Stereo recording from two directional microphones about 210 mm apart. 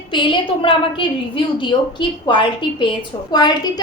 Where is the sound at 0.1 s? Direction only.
25° left (ahead or behind).